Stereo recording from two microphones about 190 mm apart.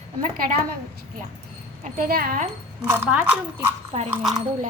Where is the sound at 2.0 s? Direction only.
50° right (ahead or behind).